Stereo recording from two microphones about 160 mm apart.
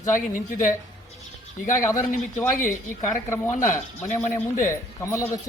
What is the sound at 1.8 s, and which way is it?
Speech, 20° left (ahead or behind).